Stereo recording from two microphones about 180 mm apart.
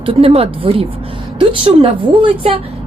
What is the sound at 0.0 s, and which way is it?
A woman's voice, 30° right (ahead or behind).